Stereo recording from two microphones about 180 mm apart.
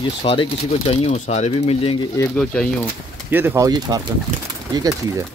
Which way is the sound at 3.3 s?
10° right (ahead or behind).